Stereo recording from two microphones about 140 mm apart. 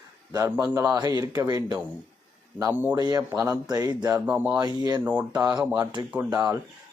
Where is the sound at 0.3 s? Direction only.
20° right (ahead or behind).